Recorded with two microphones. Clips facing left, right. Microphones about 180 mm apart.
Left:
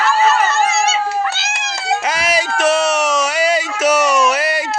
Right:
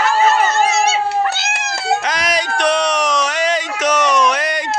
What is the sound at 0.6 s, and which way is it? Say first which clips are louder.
Dog: right 1 dB; 20° right (ahead or behind).